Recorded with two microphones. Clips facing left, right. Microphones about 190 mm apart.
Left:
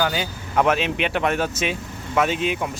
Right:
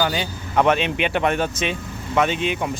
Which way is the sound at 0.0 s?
5° left (ahead or behind).